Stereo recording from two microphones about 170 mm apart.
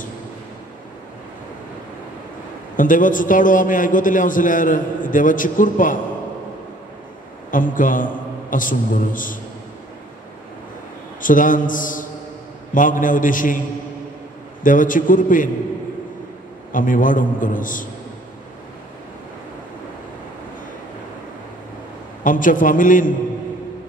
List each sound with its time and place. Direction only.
2.7 s a man's voice: 50° left (ahead or behind)
7.5 s a man's voice: 50° left (ahead or behind)
11.1 s a man's voice: 50° left (ahead or behind)
14.6 s a man's voice: 50° left (ahead or behind)
16.7 s a man's voice: 50° left (ahead or behind)
22.2 s a man's voice: 50° left (ahead or behind)